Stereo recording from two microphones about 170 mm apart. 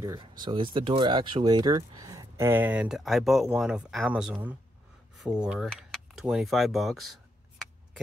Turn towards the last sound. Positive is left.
turn(degrees=0)  # may be behind; listen again after turning